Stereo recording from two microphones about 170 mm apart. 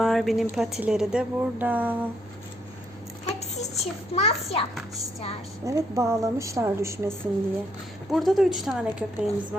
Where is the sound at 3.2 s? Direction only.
40° left (ahead or behind).